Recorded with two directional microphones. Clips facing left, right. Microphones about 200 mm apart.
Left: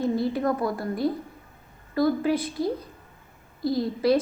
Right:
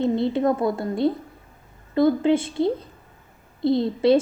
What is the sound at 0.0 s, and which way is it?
A woman's voice, 25° right (ahead or behind).